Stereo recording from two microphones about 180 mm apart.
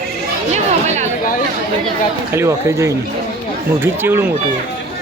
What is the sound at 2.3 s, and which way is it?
Speech, 15° right (ahead or behind).